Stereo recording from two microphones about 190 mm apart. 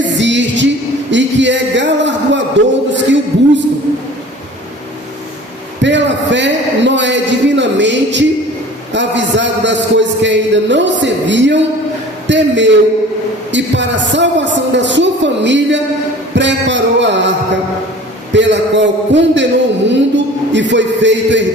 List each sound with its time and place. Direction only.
0.2 s music: 70° right (ahead or behind)
1.1 s a sound: 70° right (ahead or behind)
5.8 s a man's voice: 70° right (ahead or behind)
18.3 s a man's voice: 70° right (ahead or behind)